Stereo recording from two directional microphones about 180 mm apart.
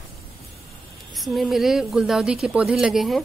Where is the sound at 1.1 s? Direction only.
Centre (ahead or behind).